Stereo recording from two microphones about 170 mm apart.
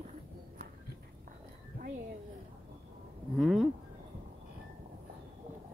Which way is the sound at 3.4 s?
Centre (ahead or behind).